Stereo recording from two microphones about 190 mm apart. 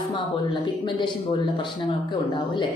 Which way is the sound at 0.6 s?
25° left (ahead or behind).